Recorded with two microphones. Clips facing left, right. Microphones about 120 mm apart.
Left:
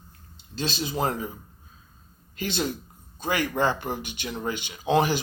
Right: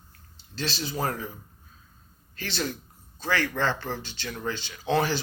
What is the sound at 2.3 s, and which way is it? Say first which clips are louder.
Speech: left 3 dB; 20° left (ahead or behind).